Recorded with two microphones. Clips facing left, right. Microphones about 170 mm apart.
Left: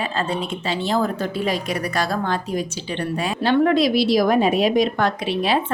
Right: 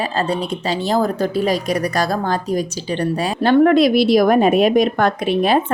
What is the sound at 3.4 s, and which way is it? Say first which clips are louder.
A woman's voice: right 5 dB; 50° right (ahead or behind).